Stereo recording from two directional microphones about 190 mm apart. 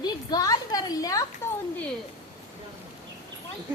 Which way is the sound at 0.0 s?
20° left (ahead or behind).